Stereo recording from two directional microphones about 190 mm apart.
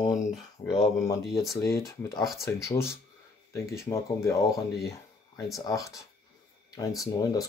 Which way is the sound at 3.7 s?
15° left (ahead or behind).